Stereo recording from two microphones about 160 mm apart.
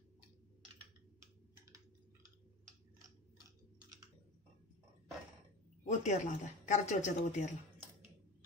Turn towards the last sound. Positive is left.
turn(degrees=50)  # may be behind; listen again after turning